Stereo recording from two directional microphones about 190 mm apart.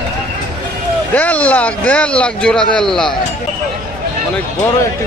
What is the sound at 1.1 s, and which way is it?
Speech, 5° left (ahead or behind).